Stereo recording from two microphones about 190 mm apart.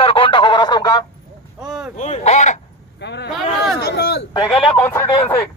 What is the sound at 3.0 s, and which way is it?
Speech, 65° left (ahead or behind).